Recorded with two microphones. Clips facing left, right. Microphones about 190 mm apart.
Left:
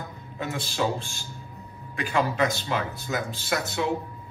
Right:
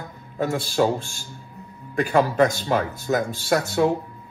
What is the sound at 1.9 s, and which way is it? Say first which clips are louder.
Speech: right 7 dB; 55° right (ahead or behind).